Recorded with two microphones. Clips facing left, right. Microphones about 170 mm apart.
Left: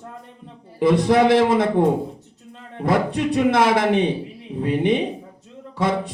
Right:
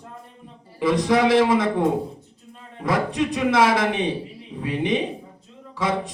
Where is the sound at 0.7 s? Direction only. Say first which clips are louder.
Left 3 dB; 55° left (ahead or behind).